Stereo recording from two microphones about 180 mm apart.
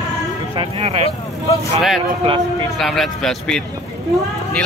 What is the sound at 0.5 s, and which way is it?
Speech, 35° right (ahead or behind).